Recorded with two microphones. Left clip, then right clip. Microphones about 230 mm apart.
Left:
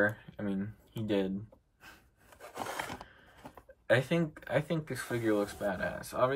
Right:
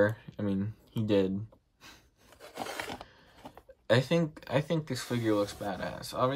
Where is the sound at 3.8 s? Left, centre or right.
Centre.